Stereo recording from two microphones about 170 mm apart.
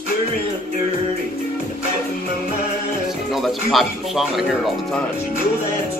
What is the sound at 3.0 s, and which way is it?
Speech, centre (ahead or behind).